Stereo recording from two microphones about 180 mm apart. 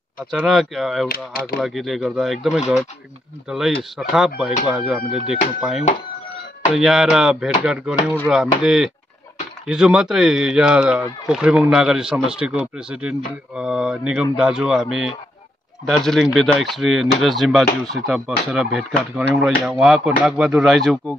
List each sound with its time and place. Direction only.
0.3 s speech: centre (ahead or behind)
1.0 s speech: 55° left (ahead or behind)
1.6 s speech: centre (ahead or behind)